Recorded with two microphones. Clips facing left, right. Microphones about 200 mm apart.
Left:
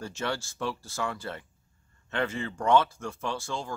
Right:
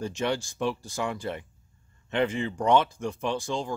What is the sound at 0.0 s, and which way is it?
Speech, 15° right (ahead or behind).